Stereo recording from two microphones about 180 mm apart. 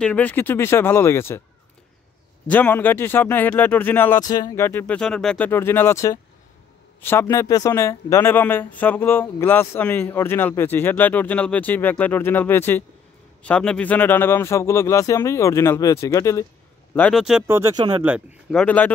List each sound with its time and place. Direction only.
0.0 s speech: 10° left (ahead or behind)
2.4 s speech: 10° left (ahead or behind)
16.9 s speech: 5° left (ahead or behind)
17.2 s speech: 5° right (ahead or behind)
17.5 s speech: 20° right (ahead or behind)
18.0 s speech: 5° right (ahead or behind)